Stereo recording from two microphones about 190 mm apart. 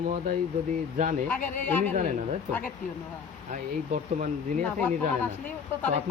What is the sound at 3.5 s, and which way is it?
Speech, 40° right (ahead or behind).